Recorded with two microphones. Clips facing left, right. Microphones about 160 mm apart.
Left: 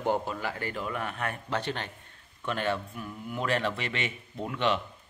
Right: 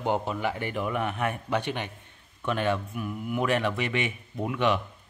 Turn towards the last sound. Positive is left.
turn(degrees=-10)  # may be behind; listen again after turning